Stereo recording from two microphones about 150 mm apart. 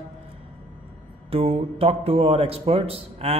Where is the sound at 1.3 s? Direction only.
40° right (ahead or behind).